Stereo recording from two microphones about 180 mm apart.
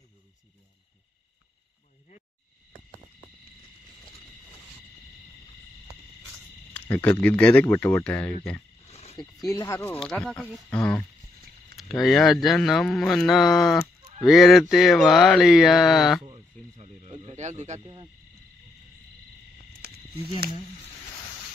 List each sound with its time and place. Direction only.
6.7 s speech: 10° left (ahead or behind)
8.9 s a sound: 35° left (ahead or behind)
9.4 s speech: 20° left (ahead or behind)
9.9 s speech: centre (ahead or behind)
16.3 s snake: 35° right (ahead or behind)